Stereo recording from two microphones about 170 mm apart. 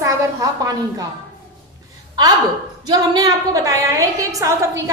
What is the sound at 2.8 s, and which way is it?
A woman's voice, 25° right (ahead or behind).